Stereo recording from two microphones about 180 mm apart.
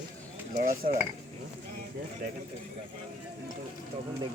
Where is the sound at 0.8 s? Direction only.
50° right (ahead or behind).